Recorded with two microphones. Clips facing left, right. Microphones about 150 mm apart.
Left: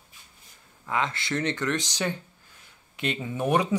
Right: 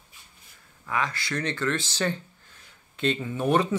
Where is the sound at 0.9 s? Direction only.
25° left (ahead or behind).